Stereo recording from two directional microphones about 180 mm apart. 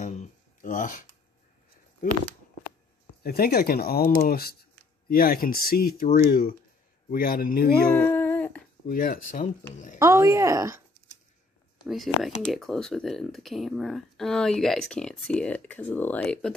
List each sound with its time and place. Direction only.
0.0 s a sound: 40° left (ahead or behind)
3.3 s speech: 55° left (ahead or behind)
7.1 s speech: 55° left (ahead or behind)
8.0 s a sound: 10° left (ahead or behind)
8.8 s speech: 55° left (ahead or behind)
9.9 s speech: 15° right (ahead or behind)
11.8 s speech: centre (ahead or behind)